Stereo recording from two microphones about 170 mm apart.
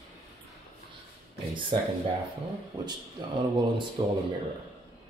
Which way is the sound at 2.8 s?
25° right (ahead or behind).